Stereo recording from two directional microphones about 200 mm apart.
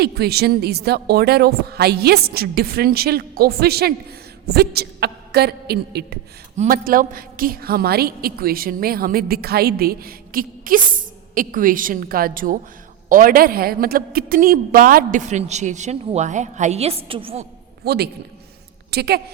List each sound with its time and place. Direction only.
0.0 s a woman's voice: 55° right (ahead or behind); by 17.4 s 25° right (ahead or behind)
17.8 s a woman's voice: 55° right (ahead or behind)